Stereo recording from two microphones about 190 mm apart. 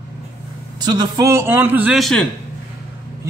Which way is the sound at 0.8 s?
20° right (ahead or behind).